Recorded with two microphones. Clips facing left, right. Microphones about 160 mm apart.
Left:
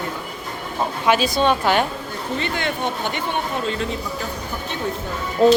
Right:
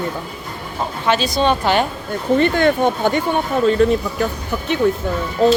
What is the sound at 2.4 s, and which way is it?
Speech, 50° right (ahead or behind).